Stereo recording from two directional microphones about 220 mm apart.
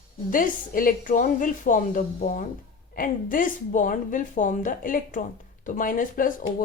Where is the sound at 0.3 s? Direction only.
40° left (ahead or behind).